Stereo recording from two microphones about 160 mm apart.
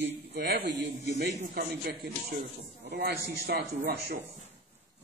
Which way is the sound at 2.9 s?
90° right.